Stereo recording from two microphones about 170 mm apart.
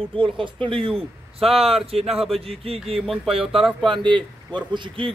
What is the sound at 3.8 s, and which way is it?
Speech, 25° right (ahead or behind).